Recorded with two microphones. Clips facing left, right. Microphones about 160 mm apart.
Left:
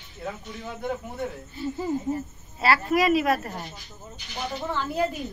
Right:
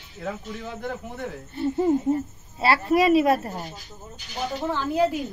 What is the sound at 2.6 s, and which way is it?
Speech, 30° right (ahead or behind).